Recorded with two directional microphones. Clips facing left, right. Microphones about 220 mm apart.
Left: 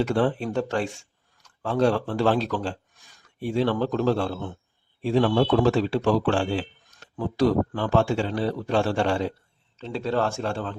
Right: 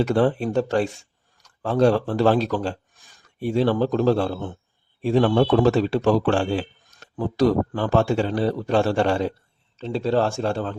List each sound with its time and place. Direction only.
0.0 s speech: 40° right (ahead or behind)